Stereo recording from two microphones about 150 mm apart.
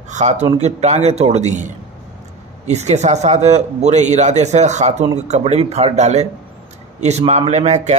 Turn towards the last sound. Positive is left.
turn(degrees=-50)  # may be behind; listen again after turning